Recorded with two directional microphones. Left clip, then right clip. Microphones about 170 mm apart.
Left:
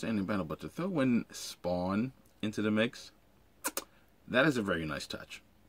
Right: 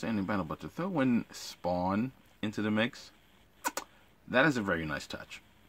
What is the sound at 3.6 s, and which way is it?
Cat, 15° right (ahead or behind).